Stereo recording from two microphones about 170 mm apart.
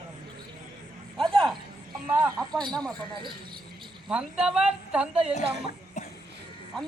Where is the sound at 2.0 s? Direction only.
10° right (ahead or behind).